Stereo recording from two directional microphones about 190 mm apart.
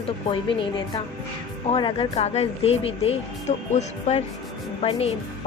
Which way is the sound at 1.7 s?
30° left (ahead or behind).